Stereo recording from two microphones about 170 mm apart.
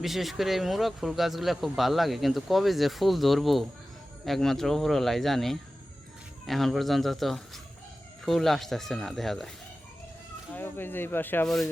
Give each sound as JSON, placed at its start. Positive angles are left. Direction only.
{"t": 0.0, "sound": "speech", "side_deg": 0}
{"t": 10.5, "sound": "speech", "side_deg": 10}